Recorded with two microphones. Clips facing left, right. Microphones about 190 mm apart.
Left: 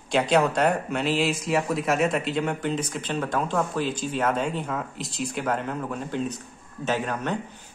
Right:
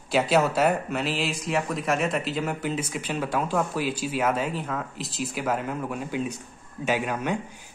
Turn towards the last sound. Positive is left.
turn(degrees=-10)  # may be behind; listen again after turning